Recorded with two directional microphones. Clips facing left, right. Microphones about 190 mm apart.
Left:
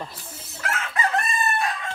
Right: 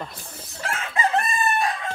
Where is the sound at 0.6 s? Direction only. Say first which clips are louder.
Right 1 dB; 30° right (ahead or behind).